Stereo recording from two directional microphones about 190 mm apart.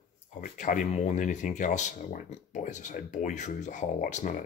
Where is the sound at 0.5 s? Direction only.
40° left (ahead or behind).